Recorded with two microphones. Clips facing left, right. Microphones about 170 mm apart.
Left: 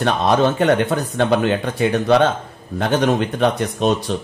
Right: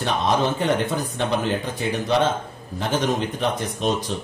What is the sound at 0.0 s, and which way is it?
Speech, 65° left (ahead or behind).